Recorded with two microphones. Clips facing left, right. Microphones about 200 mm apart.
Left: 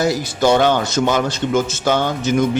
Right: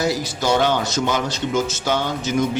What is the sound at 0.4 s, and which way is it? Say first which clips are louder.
Speech: left 5 dB; 55° left (ahead or behind).